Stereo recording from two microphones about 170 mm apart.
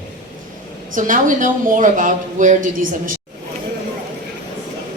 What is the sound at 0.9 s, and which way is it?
Speech, 50° right (ahead or behind).